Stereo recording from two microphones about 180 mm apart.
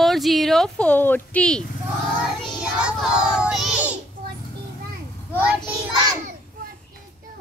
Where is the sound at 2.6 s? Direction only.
5° right (ahead or behind).